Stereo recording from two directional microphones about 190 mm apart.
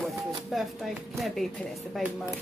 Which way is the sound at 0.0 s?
Centre (ahead or behind).